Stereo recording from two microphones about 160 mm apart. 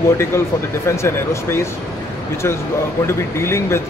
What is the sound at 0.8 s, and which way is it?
Speech, 15° left (ahead or behind).